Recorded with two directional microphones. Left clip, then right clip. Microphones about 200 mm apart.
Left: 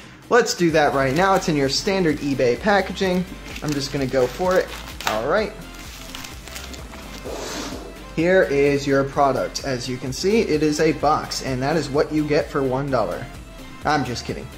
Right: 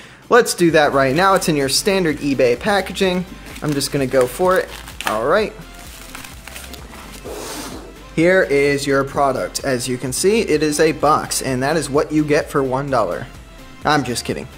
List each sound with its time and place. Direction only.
0.3 s speech: 25° right (ahead or behind)
8.2 s speech: 35° right (ahead or behind)